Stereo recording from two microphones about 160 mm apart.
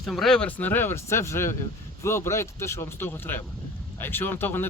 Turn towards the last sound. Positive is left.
turn(degrees=15)  # may be behind; listen again after turning